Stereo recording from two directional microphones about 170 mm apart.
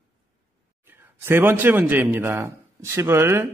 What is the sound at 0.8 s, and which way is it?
A man's voice, 15° right (ahead or behind).